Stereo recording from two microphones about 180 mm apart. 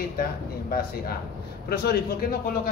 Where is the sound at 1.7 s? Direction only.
60° left (ahead or behind).